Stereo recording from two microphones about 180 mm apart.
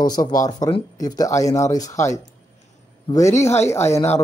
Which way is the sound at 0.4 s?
20° left (ahead or behind).